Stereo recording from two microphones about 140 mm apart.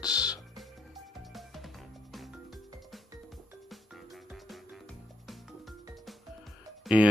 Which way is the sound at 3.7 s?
Centre (ahead or behind).